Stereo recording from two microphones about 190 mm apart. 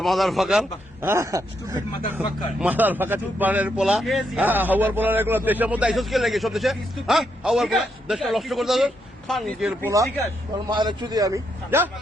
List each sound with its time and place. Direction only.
0.0 s a man's voice: centre (ahead or behind)
1.0 s a man's voice: 15° right (ahead or behind)
9.9 s a man's voice: 15° right (ahead or behind)